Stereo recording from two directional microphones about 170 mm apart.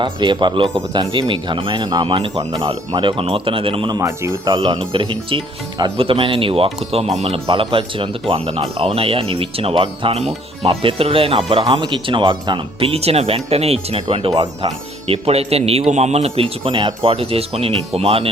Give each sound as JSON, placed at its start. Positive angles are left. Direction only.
{"t": 0.0, "sound": "speech", "side_deg": -25}